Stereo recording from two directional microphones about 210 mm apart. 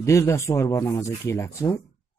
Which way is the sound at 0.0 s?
15° left (ahead or behind).